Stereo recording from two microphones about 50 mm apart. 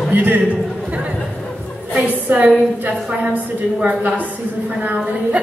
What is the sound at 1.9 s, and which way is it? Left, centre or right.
Speech, right.